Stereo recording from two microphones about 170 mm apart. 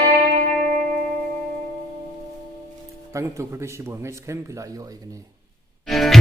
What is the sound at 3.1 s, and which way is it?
A man's voice, 15° right (ahead or behind).